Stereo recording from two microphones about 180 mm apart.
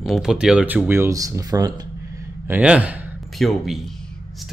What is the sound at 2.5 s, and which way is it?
Speech, 5° right (ahead or behind).